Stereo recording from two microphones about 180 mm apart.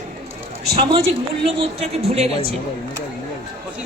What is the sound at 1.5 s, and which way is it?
Speech, 35° right (ahead or behind).